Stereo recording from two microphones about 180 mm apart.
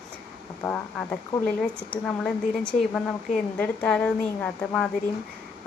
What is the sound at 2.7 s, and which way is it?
Speech, 35° left (ahead or behind).